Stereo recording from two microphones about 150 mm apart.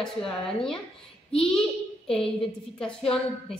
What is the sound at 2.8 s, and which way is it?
Speech, 5° left (ahead or behind).